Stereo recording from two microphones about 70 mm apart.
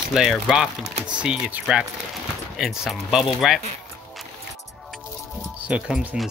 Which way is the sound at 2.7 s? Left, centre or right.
Centre.